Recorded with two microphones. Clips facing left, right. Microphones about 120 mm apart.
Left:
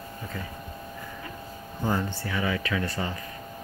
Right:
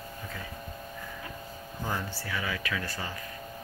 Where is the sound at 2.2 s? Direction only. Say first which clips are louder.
Left 4 dB; 25° left (ahead or behind).